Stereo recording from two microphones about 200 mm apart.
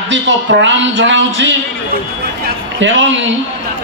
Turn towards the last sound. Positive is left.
turn(degrees=-70)  # may be behind; listen again after turning